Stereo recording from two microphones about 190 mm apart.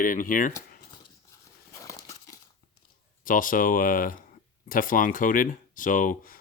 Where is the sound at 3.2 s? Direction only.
45° left (ahead or behind).